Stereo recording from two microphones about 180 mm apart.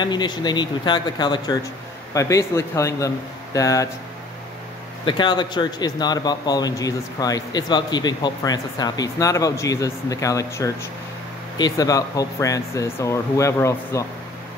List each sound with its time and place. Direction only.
0.0 s a man's voice: 25° left (ahead or behind)
5.0 s a man's voice: 25° left (ahead or behind)